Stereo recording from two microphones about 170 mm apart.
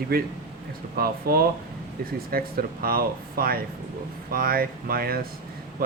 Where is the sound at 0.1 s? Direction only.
60° right (ahead or behind).